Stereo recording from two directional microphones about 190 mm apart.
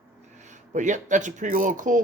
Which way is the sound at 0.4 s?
40° right (ahead or behind).